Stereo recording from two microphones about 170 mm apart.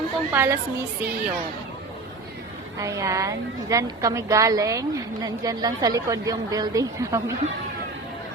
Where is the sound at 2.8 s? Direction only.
20° right (ahead or behind).